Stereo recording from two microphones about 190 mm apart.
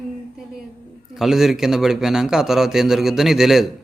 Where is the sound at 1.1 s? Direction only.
Centre (ahead or behind).